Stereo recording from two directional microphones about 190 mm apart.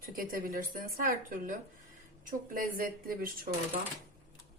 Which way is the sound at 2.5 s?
50° right (ahead or behind).